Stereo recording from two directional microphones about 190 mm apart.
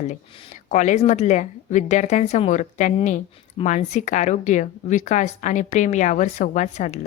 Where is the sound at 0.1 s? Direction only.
40° left (ahead or behind).